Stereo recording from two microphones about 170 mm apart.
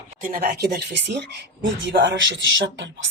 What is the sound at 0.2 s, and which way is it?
A woman's voice, 55° right (ahead or behind).